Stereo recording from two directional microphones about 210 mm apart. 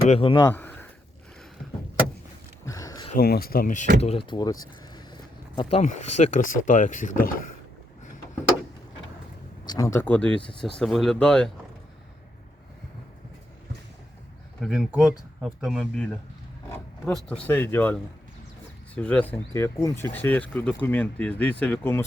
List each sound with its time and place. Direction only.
0.1 s speech: 25° left (ahead or behind)
0.5 s a sound: 10° left (ahead or behind)
2.6 s a sound: 15° left (ahead or behind)
3.2 s speech: 45° left (ahead or behind)
4.0 s speech: 25° left (ahead or behind)
9.6 s speech: 15° left (ahead or behind)
14.6 s speech: 5° right (ahead or behind)
17.1 s speech: 5° left (ahead or behind)